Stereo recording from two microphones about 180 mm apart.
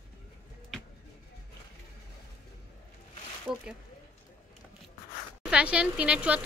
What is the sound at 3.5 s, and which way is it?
Zipper, 5° right (ahead or behind).